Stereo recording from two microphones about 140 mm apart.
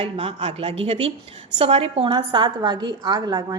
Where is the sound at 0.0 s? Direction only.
45° right (ahead or behind).